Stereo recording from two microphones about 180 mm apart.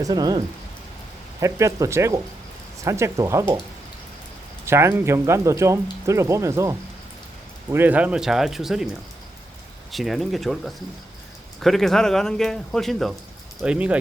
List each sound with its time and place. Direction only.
0.0 s speech: 20° right (ahead or behind)
4.6 s speech: 15° right (ahead or behind)
9.9 s speech: centre (ahead or behind)